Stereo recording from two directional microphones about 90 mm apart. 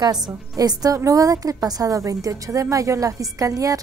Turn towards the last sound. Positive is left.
turn(degrees=-40)  # may be behind; listen again after turning